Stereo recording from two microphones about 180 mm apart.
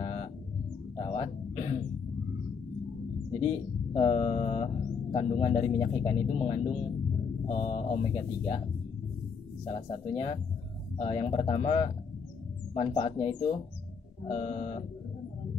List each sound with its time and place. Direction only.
0.0 s bird: 30° left (ahead or behind)
0.9 s music: 30° left (ahead or behind)
3.9 s speech: 35° left (ahead or behind)
9.7 s speech: 30° left (ahead or behind)